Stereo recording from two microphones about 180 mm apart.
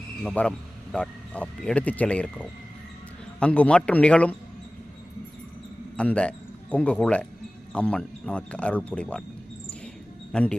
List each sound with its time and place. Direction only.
0.2 s speech: 5° left (ahead or behind)
6.0 s speech: 5° left (ahead or behind)
10.3 s speech: 5° left (ahead or behind)